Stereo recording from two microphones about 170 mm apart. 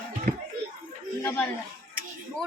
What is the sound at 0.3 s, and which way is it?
Speech, 65° right (ahead or behind).